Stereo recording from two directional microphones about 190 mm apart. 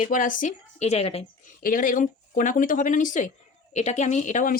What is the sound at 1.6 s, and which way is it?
Speech, 45° left (ahead or behind).